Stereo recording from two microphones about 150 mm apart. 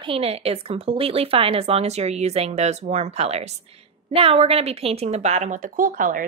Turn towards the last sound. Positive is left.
turn(degrees=-65)  # may be behind; listen again after turning